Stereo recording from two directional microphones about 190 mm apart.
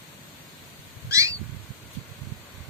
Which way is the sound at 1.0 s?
15° right (ahead or behind).